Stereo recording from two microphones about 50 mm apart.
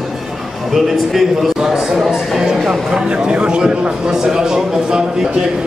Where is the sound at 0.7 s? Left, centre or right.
Centre.